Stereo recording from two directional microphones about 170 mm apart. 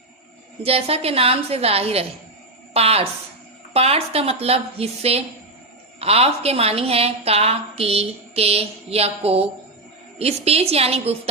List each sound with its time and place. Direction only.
0.6 s a woman's voice: 35° right (ahead or behind)